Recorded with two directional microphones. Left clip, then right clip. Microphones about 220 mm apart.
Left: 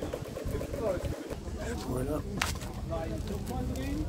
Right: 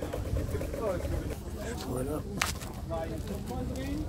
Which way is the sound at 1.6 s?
5° left (ahead or behind).